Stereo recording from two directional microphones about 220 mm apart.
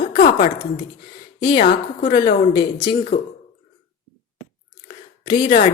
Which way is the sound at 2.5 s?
20° left (ahead or behind).